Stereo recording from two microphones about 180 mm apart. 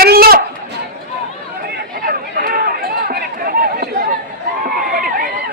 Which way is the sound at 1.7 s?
55° right (ahead or behind).